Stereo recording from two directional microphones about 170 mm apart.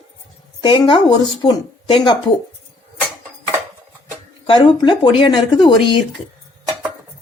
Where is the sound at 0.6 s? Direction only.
30° left (ahead or behind).